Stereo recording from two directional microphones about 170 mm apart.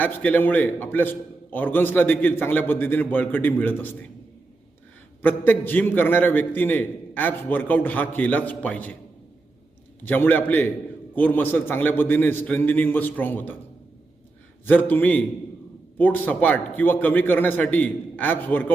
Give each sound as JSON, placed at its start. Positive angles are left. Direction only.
{"t": 0.0, "sound": "a man's voice", "side_deg": 10}
{"t": 5.2, "sound": "a man's voice", "side_deg": 10}
{"t": 10.0, "sound": "a man's voice", "side_deg": 10}
{"t": 14.6, "sound": "a man's voice", "side_deg": 10}